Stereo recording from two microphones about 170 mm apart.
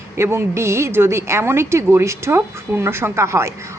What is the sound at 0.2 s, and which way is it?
A woman's voice, 15° right (ahead or behind).